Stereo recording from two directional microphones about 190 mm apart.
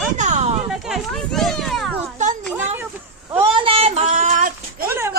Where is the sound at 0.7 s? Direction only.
Centre (ahead or behind).